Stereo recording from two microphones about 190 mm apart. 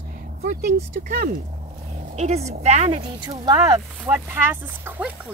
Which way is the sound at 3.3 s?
20° right (ahead or behind).